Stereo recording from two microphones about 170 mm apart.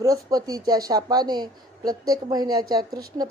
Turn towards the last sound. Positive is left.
turn(degrees=-20)  # may be behind; listen again after turning